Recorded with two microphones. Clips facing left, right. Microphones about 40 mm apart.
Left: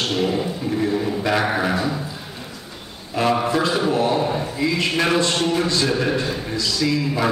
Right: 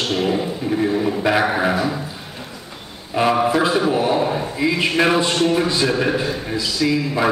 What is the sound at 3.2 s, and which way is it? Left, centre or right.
A man's voice, centre.